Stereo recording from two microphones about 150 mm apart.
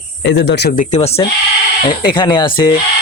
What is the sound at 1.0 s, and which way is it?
Speech, 45° left (ahead or behind).